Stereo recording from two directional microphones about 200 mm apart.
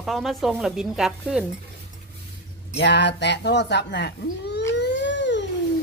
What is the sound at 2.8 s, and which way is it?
Speech, 60° left (ahead or behind).